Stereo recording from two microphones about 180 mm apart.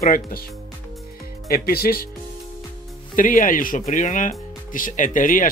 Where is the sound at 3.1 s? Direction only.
50° left (ahead or behind).